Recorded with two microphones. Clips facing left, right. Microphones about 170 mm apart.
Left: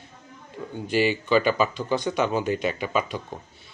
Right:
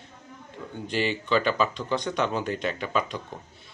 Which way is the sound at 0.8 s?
10° left (ahead or behind).